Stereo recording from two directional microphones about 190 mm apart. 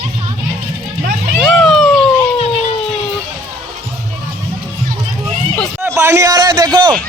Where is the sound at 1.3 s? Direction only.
Centre (ahead or behind).